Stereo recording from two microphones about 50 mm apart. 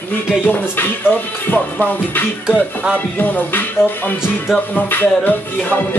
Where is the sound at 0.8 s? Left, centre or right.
Left.